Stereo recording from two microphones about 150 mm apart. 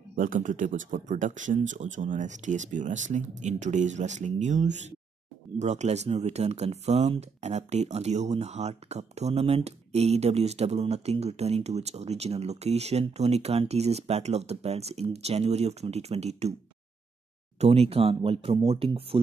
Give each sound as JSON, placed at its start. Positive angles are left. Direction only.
{"t": 0.1, "sound": "speech", "side_deg": -60}
{"t": 17.6, "sound": "speech", "side_deg": -45}